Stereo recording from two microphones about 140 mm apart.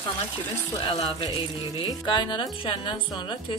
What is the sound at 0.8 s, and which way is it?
A woman's voice, 25° left (ahead or behind).